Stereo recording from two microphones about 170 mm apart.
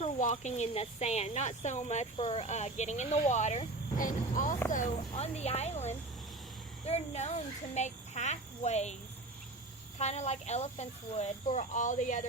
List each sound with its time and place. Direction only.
0.0 s speech: 45° left (ahead or behind)
2.1 s speech: 30° left (ahead or behind)
10.0 s speech: 40° left (ahead or behind)